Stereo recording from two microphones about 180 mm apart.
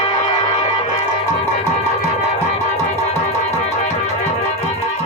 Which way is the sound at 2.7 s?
35° left (ahead or behind).